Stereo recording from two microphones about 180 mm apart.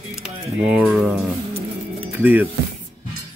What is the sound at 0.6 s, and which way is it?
Speech, 5° right (ahead or behind).